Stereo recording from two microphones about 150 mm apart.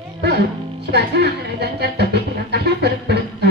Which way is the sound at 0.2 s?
90° right.